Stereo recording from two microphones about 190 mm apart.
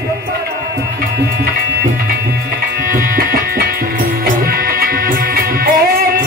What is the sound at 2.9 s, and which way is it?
Music, 50° right (ahead or behind).